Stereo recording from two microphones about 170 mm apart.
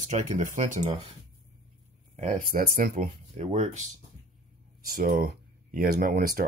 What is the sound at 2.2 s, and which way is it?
Speech, 50° right (ahead or behind).